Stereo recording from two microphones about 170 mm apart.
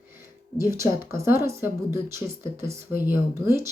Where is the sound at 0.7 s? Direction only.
15° right (ahead or behind).